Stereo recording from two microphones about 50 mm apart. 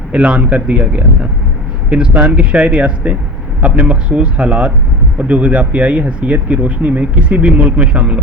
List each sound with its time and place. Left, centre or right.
0.1 s speech: right